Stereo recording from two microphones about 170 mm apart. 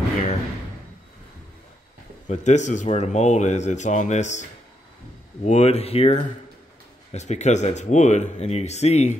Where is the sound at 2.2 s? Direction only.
45° left (ahead or behind).